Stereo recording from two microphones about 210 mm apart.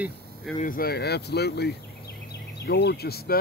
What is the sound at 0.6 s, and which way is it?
Speech, 40° left (ahead or behind).